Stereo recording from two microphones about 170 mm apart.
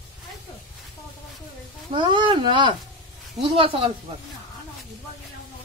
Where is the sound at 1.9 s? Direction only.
30° right (ahead or behind).